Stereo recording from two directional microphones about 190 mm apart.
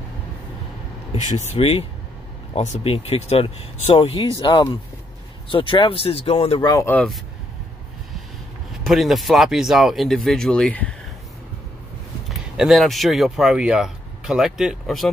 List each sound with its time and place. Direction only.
1.1 s speech: 35° left (ahead or behind)
6.7 s speech: 15° left (ahead or behind)
8.8 s speech: centre (ahead or behind)
12.3 s speech: centre (ahead or behind)